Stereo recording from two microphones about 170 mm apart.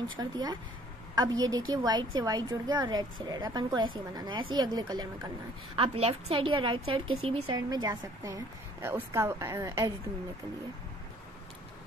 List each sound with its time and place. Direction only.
0.1 s a woman's voice: 25° right (ahead or behind)
5.8 s a woman's voice: 35° right (ahead or behind); by 9.9 s 20° right (ahead or behind)